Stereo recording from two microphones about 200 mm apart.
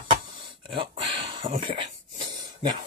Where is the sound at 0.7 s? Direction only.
25° right (ahead or behind).